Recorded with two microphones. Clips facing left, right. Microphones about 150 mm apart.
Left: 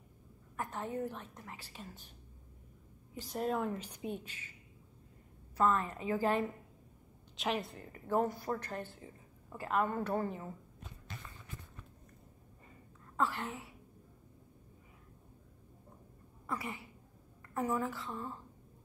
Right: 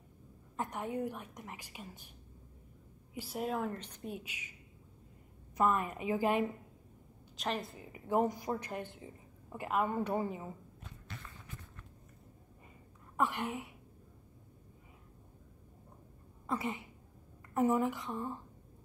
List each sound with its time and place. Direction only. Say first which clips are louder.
0.6 s a woman's voice: right 1 dB; 15° right (ahead or behind)
3.2 s a woman's voice: left 1 dB; 5° right (ahead or behind)
3.8 s a woman's voice: left 3 dB; 10° left (ahead or behind)
4.1 s a woman's voice: even; 10° right (ahead or behind)
5.6 s a woman's voice: even; 15° right (ahead or behind)
7.3 s a woman's voice: left 1 dB; centre (ahead or behind)
13.1 s a woman's voice: right 1 dB; 20° right (ahead or behind)
16.4 s a sound: right 4 dB; 20° right (ahead or behind)
17.6 s speech: right 5 dB; 20° right (ahead or behind)